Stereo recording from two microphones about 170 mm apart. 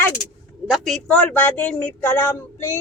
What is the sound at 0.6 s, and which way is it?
Speech, 5° right (ahead or behind).